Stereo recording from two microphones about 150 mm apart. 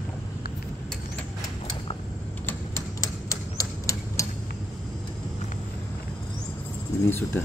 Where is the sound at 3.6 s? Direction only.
20° left (ahead or behind).